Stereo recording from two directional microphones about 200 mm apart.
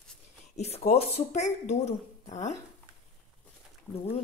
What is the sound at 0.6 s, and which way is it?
Speech, 30° left (ahead or behind).